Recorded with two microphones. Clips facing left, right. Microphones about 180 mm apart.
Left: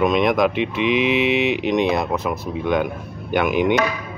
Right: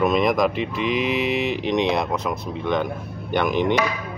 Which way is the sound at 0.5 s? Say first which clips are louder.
Left 4 dB; 40° right (ahead or behind).